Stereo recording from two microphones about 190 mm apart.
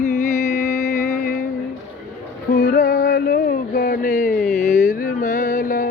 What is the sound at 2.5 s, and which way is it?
Music, 50° left (ahead or behind).